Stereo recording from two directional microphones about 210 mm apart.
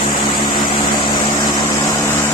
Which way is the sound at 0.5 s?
20° left (ahead or behind).